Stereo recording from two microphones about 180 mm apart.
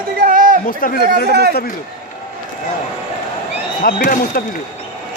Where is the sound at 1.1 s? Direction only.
65° right (ahead or behind).